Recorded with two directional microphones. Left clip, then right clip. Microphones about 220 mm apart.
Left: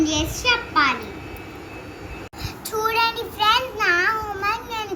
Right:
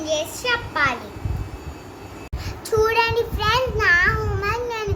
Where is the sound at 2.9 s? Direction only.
15° right (ahead or behind).